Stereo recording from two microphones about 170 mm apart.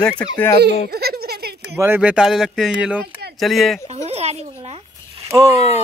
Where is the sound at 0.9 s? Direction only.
70° right (ahead or behind).